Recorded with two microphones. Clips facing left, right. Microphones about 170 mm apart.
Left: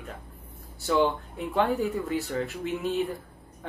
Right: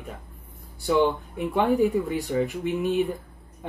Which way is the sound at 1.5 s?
15° right (ahead or behind).